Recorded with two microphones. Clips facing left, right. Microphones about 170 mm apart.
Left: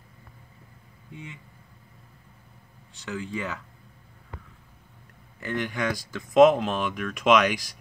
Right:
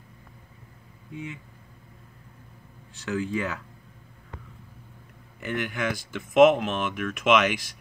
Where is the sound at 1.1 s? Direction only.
30° left (ahead or behind).